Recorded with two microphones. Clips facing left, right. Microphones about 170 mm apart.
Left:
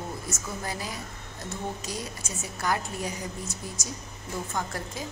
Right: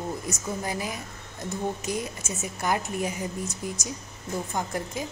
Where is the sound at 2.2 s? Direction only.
20° right (ahead or behind).